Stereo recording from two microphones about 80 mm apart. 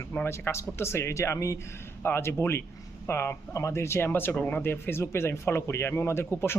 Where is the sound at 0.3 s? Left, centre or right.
Left.